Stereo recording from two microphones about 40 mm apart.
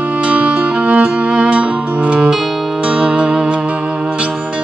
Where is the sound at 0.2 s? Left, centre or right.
Right.